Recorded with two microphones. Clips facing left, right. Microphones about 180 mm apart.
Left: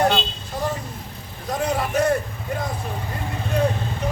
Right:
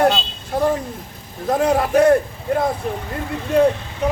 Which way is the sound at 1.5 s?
55° right (ahead or behind).